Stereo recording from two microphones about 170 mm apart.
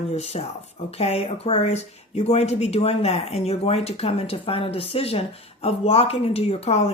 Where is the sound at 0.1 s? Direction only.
40° left (ahead or behind).